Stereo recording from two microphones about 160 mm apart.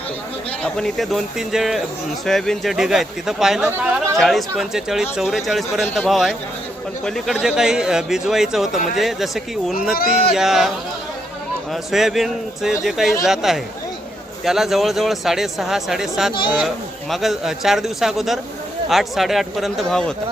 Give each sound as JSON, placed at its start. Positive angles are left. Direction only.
{"t": 0.6, "sound": "speech", "side_deg": 0}
{"t": 3.7, "sound": "speech", "side_deg": -15}
{"t": 4.2, "sound": "speech", "side_deg": 0}
{"t": 9.9, "sound": "speech", "side_deg": 65}
{"t": 10.3, "sound": "speech", "side_deg": -5}
{"t": 11.7, "sound": "speech", "side_deg": 0}